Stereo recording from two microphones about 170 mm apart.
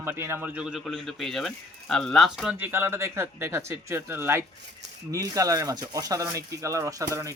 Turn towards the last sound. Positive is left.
turn(degrees=-20)  # may be behind; listen again after turning